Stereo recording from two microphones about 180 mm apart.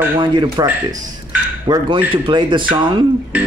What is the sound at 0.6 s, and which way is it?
Speech, 10° right (ahead or behind).